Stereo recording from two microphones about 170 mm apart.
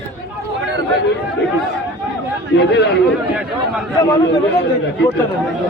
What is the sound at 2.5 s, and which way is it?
Speech, 80° left.